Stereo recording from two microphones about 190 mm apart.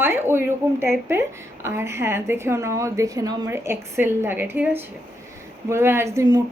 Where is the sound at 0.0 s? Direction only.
10° right (ahead or behind).